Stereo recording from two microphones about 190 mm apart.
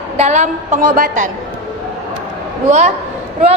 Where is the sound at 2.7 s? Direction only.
35° right (ahead or behind).